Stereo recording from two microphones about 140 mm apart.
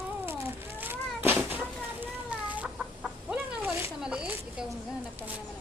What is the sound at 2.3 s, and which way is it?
Chicken, 10° right (ahead or behind).